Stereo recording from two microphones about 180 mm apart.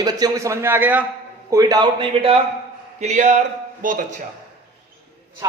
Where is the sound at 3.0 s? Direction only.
40° right (ahead or behind).